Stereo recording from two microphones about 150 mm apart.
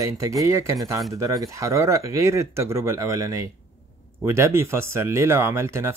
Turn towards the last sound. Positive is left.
turn(degrees=-20)  # may be behind; listen again after turning